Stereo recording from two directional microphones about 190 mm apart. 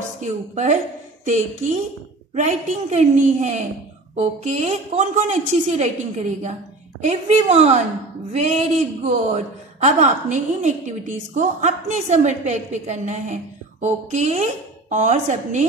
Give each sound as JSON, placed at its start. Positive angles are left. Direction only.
{"t": 0.2, "sound": "a man's voice", "side_deg": -40}
{"t": 7.0, "sound": "a man's voice", "side_deg": -35}